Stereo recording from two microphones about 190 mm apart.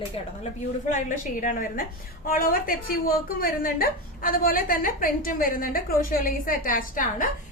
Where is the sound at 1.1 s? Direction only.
45° left (ahead or behind).